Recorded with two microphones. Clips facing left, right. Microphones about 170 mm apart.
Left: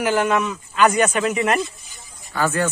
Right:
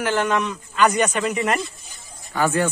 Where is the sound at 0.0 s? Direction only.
10° left (ahead or behind).